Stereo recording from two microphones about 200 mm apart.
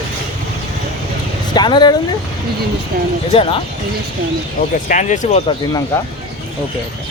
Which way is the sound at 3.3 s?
25° left (ahead or behind).